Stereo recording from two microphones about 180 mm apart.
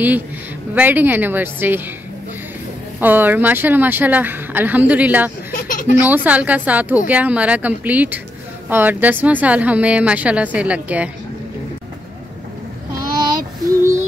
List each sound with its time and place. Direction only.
0.7 s a woman's voice: 10° right (ahead or behind)
3.0 s a woman's voice: 10° right (ahead or behind)
5.5 s a sound: 50° left (ahead or behind)
6.0 s a woman's voice: 10° right (ahead or behind)
13.7 s child singing: 15° right (ahead or behind)